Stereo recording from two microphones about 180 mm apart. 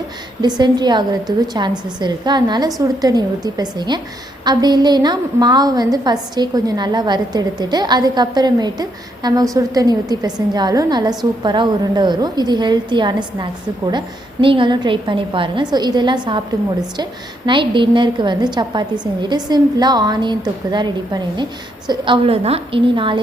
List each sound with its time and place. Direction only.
0.4 s a woman's voice: 25° right (ahead or behind)